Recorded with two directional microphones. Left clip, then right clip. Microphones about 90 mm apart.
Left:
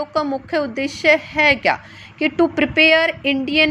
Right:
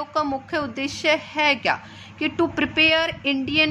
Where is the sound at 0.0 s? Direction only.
30° left (ahead or behind).